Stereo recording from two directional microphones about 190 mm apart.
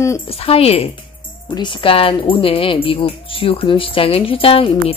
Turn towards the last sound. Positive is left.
turn(degrees=30)  # may be behind; listen again after turning